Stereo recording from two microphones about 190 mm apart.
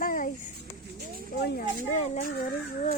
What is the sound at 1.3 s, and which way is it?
Speech, 60° left (ahead or behind).